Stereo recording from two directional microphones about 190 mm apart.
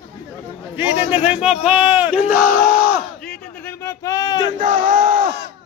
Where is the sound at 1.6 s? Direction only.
5° right (ahead or behind).